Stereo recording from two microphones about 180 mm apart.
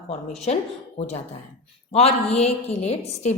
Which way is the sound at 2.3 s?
35° left (ahead or behind).